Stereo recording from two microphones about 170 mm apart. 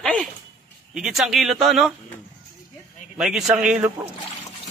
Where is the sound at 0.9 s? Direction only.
5° right (ahead or behind).